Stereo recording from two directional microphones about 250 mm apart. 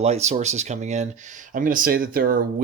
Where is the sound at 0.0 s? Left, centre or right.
Right.